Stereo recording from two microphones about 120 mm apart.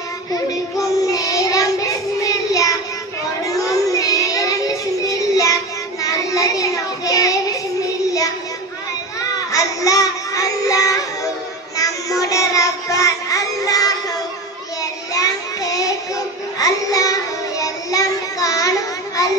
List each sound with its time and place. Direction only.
0.3 s child singing: 30° left (ahead or behind)
9.5 s child singing: 30° left (ahead or behind)